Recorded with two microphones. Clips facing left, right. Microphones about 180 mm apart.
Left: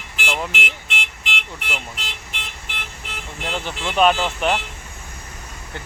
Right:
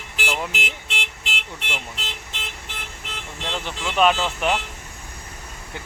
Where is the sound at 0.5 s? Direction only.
35° right (ahead or behind).